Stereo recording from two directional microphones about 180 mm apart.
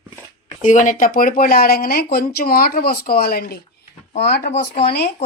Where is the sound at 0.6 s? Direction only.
45° left (ahead or behind); by 4.4 s 65° left (ahead or behind).